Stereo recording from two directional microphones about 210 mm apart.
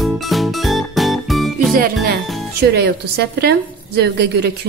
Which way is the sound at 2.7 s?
50° right (ahead or behind).